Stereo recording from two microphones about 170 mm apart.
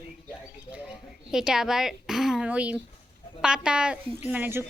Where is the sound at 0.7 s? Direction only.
5° right (ahead or behind).